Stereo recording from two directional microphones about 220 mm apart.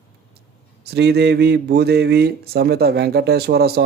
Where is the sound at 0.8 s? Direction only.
50° right (ahead or behind).